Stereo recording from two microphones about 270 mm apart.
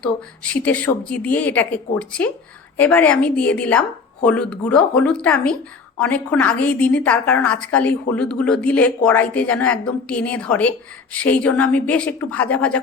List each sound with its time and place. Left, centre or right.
0.0 s a woman's voice: centre